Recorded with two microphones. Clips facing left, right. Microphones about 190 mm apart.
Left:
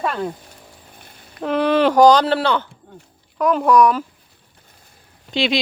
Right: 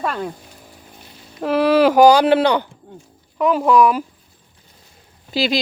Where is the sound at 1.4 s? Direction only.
5° right (ahead or behind).